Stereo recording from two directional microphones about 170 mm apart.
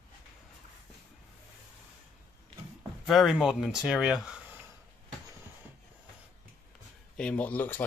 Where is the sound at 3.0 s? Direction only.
Centre (ahead or behind).